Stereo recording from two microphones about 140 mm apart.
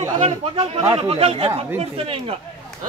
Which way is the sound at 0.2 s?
40° right (ahead or behind).